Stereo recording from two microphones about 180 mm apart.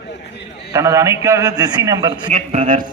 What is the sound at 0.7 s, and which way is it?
A man's voice, 15° right (ahead or behind).